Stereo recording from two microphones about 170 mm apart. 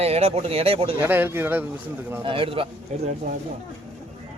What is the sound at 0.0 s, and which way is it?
Speech, 35° right (ahead or behind).